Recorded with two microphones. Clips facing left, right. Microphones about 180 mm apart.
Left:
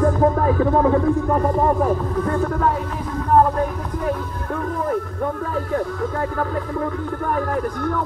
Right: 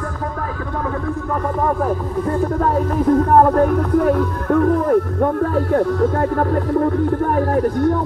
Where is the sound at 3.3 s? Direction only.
55° right (ahead or behind).